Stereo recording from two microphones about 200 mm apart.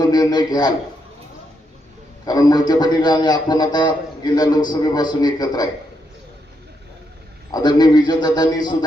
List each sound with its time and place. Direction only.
0.0 s a man's voice: 20° left (ahead or behind)
2.2 s a man's voice: 20° left (ahead or behind)
7.5 s a man's voice: 20° left (ahead or behind)